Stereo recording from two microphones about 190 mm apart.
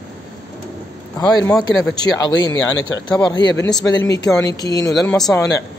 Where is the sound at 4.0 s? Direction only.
65° left (ahead or behind).